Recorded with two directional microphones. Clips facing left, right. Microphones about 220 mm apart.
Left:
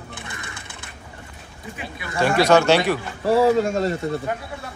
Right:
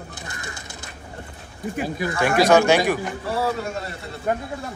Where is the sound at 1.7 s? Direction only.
40° right (ahead or behind).